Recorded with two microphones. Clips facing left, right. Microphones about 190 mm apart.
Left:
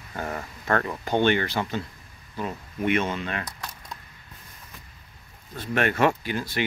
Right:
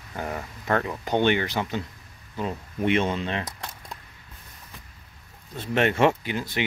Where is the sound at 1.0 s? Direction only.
15° right (ahead or behind).